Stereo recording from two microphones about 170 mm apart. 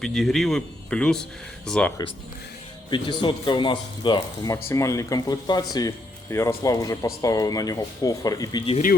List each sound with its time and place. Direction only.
0.0 s a man's voice: centre (ahead or behind)
2.9 s speech: 30° left (ahead or behind)